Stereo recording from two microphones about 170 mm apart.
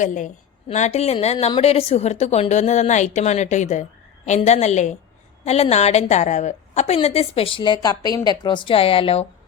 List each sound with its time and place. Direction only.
0.0 s a woman's voice: 45° left (ahead or behind)